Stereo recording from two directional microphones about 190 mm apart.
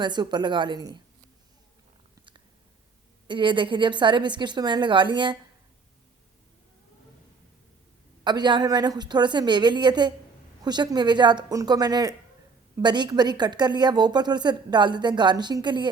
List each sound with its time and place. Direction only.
0.0 s a woman's voice: 25° right (ahead or behind)
3.2 s a woman's voice: 25° right (ahead or behind)
8.2 s a woman's voice: 25° right (ahead or behind)